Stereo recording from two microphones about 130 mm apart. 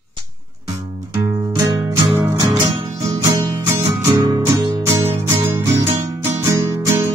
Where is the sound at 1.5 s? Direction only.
30° right (ahead or behind).